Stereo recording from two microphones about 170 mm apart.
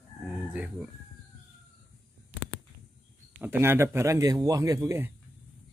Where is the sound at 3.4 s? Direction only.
10° right (ahead or behind).